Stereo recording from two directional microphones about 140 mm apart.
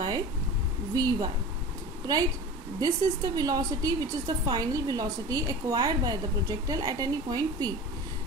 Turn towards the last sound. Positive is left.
turn(degrees=-30)  # may be behind; listen again after turning